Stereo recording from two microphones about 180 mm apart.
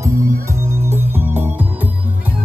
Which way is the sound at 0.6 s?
15° right (ahead or behind).